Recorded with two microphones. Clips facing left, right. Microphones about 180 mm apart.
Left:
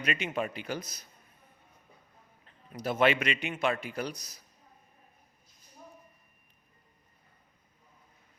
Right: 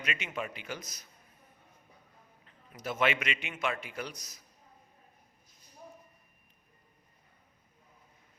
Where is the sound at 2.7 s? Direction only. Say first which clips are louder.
Left 5 dB; 35° left (ahead or behind).